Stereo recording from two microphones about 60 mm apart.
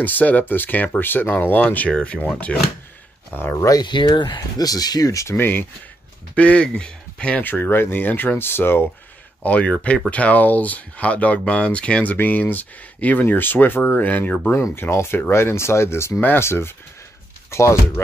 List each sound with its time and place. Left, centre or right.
0.0 s speech: left
2.0 s speech: centre
3.3 s speech: left
3.5 s speech: left
4.4 s speech: left
5.4 s speech: left
6.3 s speech: left
7.4 s speech: left
9.4 s speech: left
14.5 s speech: left